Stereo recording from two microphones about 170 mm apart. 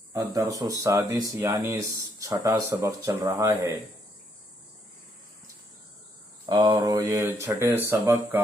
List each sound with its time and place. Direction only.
0.1 s speech: 20° right (ahead or behind)
6.4 s speech: 25° right (ahead or behind)